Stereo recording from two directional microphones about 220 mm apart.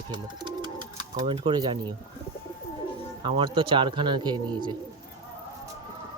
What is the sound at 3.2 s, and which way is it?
A man's voice, 20° right (ahead or behind).